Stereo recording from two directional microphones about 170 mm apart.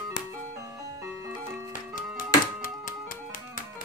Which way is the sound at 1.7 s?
55° left (ahead or behind).